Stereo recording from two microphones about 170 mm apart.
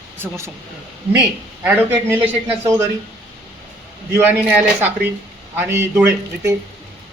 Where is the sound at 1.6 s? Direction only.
10° right (ahead or behind).